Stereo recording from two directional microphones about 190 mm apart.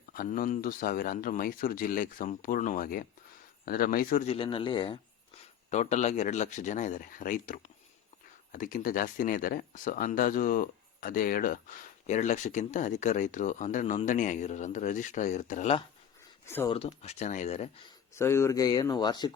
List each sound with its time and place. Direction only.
0.1 s speech: 50° left (ahead or behind)
4.3 s speech: 30° left (ahead or behind)
5.7 s speech: 40° left (ahead or behind)
18.1 s speech: 15° left (ahead or behind)